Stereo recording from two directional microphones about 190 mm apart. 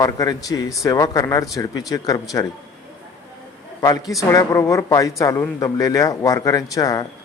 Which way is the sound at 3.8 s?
20° left (ahead or behind).